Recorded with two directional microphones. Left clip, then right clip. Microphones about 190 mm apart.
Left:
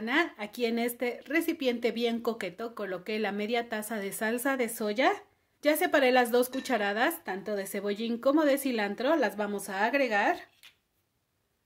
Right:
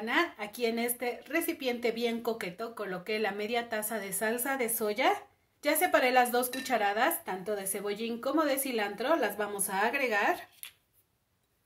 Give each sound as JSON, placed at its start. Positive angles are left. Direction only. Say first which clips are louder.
{"t": 0.0, "sound": "a woman's voice", "louder": "left 1 dB", "side_deg": 55}